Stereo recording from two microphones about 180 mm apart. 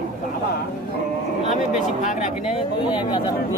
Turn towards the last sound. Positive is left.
turn(degrees=25)  # may be behind; listen again after turning